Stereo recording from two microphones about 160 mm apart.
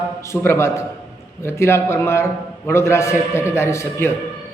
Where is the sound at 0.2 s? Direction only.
15° left (ahead or behind).